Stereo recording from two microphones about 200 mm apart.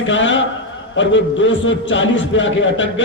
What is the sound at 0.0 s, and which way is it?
A man's voice, 70° left (ahead or behind).